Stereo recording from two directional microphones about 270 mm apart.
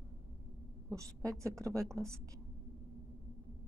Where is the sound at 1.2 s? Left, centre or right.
Centre.